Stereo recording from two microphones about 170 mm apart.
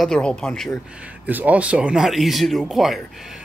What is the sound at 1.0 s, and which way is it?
Speech, 10° right (ahead or behind).